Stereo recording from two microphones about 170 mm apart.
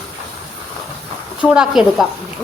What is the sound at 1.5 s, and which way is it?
Speech, 5° right (ahead or behind).